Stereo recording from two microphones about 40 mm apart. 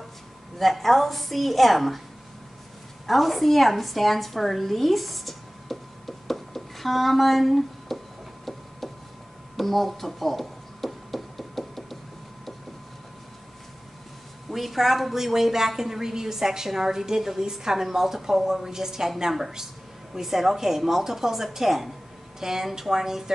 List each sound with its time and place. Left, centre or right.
0.6 s a woman's voice: centre
3.1 s a woman's voice: centre
9.6 s a sound: centre
14.5 s a woman's voice: centre